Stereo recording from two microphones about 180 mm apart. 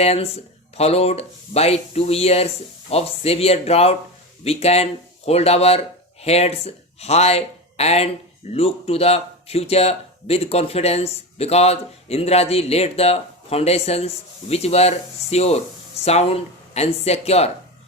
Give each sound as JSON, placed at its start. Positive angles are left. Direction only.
{"t": 0.0, "sound": "speech", "side_deg": 35}